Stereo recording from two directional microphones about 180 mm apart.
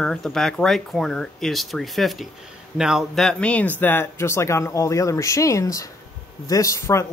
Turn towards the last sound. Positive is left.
turn(degrees=15)  # may be behind; listen again after turning